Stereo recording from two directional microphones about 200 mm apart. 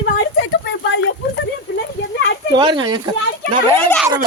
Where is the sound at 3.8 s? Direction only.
10° left (ahead or behind).